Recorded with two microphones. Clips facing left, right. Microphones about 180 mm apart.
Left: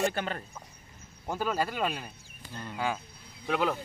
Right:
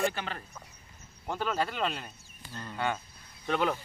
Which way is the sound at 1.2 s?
10° left (ahead or behind).